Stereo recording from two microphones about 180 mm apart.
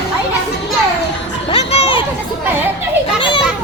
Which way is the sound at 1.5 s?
35° left (ahead or behind).